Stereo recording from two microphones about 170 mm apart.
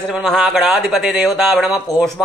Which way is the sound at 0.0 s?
Centre (ahead or behind).